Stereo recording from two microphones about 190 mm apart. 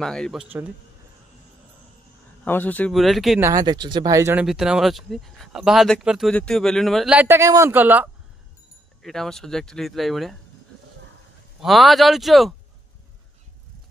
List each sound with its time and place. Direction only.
0.0 s speech: 5° left (ahead or behind)
2.4 s speech: 10° left (ahead or behind)
3.4 s speech: 20° right (ahead or behind)
4.5 s speech: centre (ahead or behind)
7.2 s speech: 15° right (ahead or behind)
9.0 s speech: centre (ahead or behind)
11.6 s speech: centre (ahead or behind)